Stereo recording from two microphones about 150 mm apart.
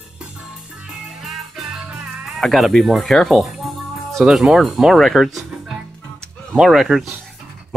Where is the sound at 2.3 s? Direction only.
Centre (ahead or behind).